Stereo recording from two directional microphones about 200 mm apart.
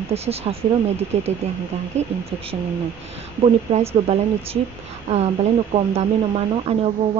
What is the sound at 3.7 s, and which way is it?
Speech, 30° right (ahead or behind).